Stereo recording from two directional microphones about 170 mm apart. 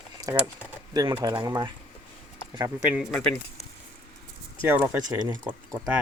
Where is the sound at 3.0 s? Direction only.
Centre (ahead or behind).